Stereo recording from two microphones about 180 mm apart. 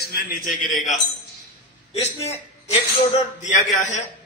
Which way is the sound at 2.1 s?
15° left (ahead or behind).